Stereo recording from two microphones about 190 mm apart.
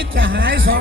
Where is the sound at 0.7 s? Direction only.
60° right (ahead or behind).